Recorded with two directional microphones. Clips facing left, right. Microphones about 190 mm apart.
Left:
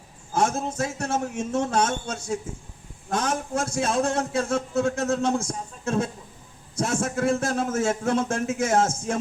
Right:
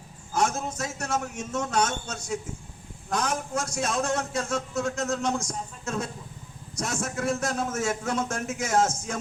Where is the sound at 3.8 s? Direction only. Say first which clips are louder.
Left 3 dB; 30° left (ahead or behind).